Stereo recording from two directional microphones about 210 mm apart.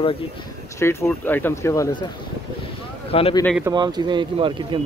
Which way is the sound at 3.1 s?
25° left (ahead or behind).